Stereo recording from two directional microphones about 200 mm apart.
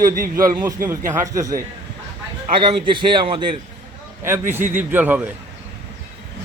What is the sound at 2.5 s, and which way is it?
A man's voice, 25° right (ahead or behind).